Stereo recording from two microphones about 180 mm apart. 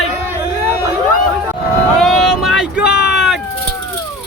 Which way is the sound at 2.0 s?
Centre (ahead or behind).